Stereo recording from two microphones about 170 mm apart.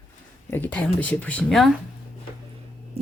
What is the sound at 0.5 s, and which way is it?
Speech, 10° left (ahead or behind).